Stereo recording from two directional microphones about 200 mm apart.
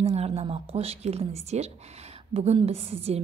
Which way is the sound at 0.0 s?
30° right (ahead or behind).